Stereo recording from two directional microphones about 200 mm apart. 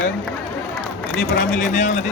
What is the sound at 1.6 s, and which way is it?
Speech, 35° left (ahead or behind).